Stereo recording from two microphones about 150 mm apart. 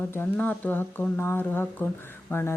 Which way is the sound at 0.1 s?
10° left (ahead or behind).